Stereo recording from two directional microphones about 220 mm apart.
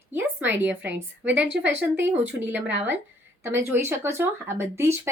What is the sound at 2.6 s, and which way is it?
Speech, 55° right (ahead or behind).